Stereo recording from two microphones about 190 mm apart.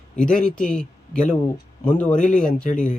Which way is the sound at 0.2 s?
5° left (ahead or behind).